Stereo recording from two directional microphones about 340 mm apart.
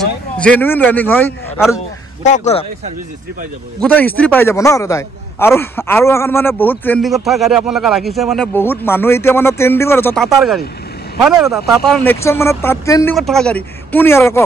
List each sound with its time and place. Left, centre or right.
0.4 s speech: centre
2.2 s speech: centre
3.8 s a man's voice: centre